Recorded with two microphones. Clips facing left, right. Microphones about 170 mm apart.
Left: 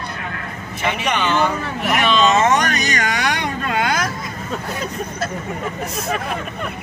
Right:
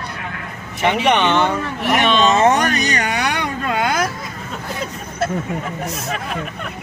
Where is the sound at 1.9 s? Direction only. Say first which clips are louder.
Right 1 dB; 30° right (ahead or behind).